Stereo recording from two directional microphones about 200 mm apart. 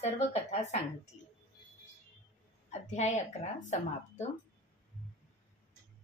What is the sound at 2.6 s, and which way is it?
A woman's voice, 35° left (ahead or behind).